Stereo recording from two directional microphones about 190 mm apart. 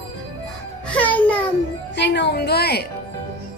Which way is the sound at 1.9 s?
65° left (ahead or behind).